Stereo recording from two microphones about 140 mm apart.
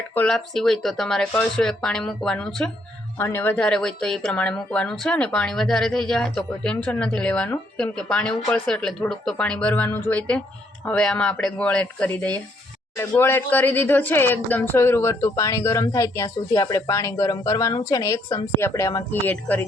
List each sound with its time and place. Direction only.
0.1 s speech: 10° left (ahead or behind)
19.3 s speech: 10° left (ahead or behind)